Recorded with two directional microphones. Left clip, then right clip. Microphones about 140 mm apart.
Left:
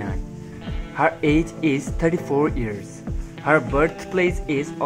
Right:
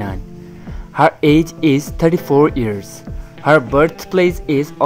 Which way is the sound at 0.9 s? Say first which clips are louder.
Right 7 dB; 45° right (ahead or behind).